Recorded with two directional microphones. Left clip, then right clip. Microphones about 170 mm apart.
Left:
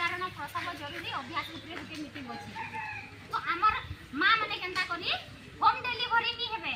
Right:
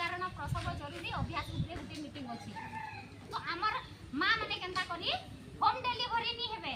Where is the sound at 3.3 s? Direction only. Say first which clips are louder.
Left 7 dB; 35° right (ahead or behind).